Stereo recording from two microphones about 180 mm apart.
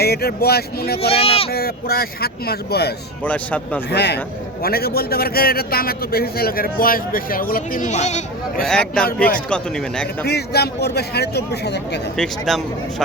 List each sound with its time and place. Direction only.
0.0 s a man's voice: 60° left (ahead or behind)
1.1 s speech: 30° left (ahead or behind)
1.5 s a man's voice: 60° left (ahead or behind)
3.2 s a man's voice: 10° left (ahead or behind)
3.9 s a man's voice: 65° left (ahead or behind); by 8.6 s 40° left (ahead or behind)
8.6 s speech: 5° left (ahead or behind)
10.2 s a man's voice: 65° left (ahead or behind)
12.1 s speech: centre (ahead or behind)